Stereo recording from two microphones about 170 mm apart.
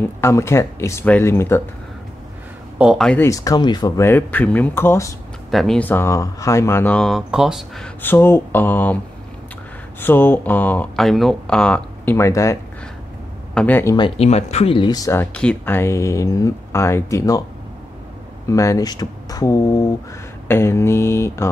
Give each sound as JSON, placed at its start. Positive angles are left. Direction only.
{"t": 0.2, "sound": "speech", "side_deg": 15}
{"t": 2.8, "sound": "speech", "side_deg": 0}
{"t": 3.2, "sound": "speech", "side_deg": 20}
{"t": 5.5, "sound": "speech", "side_deg": 0}
{"t": 13.6, "sound": "speech", "side_deg": 10}
{"t": 13.9, "sound": "speech", "side_deg": 30}
{"t": 18.5, "sound": "speech", "side_deg": 20}